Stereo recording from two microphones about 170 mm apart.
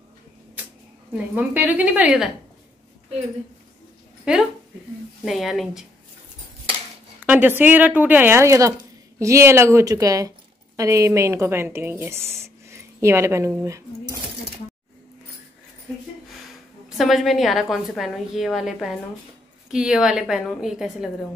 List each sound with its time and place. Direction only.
1.1 s speech: 10° right (ahead or behind)
4.3 s a woman's voice: 5° right (ahead or behind)
7.2 s speech: 10° right (ahead or behind)
16.9 s a woman's voice: centre (ahead or behind)